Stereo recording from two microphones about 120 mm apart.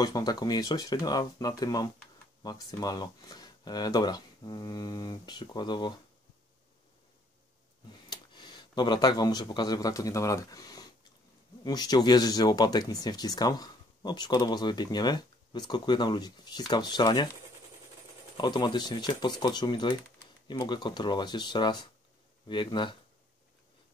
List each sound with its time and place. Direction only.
0.0 s speech: 30° left (ahead or behind)
8.1 s speech: 35° left (ahead or behind)
18.4 s speech: 40° left (ahead or behind)